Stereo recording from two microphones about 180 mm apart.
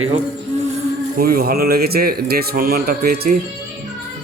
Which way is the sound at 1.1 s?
55° right (ahead or behind).